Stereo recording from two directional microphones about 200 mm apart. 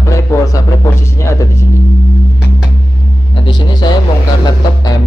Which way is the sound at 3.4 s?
20° left (ahead or behind).